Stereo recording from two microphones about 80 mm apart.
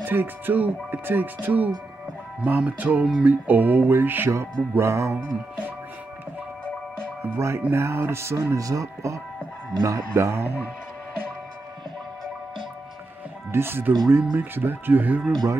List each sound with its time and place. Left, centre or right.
0.0 s speech: right
4.3 s speech: right
7.0 s music: right
7.3 s speech: right
13.5 s speech: right